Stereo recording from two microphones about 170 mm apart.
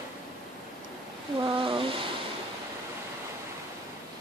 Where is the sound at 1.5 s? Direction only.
30° right (ahead or behind).